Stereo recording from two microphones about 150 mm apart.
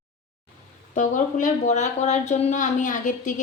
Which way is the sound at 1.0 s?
60° left (ahead or behind).